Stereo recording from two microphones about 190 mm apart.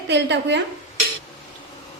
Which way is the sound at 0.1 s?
65° right (ahead or behind).